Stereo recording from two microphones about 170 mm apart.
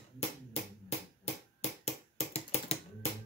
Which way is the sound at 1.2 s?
40° left (ahead or behind).